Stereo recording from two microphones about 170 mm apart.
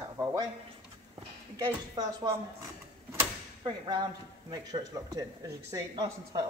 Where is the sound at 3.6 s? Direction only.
25° right (ahead or behind).